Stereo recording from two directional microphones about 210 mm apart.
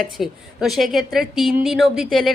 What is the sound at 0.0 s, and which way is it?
A woman's voice, centre (ahead or behind).